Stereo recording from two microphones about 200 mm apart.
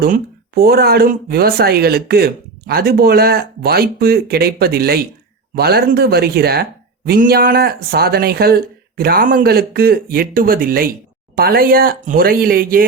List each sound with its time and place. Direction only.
0.0 s speech: 50° right (ahead or behind)